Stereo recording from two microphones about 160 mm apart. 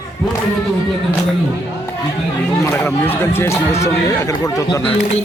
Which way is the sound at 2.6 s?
15° left (ahead or behind).